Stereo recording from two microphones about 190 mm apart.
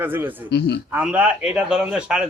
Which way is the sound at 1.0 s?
5° right (ahead or behind).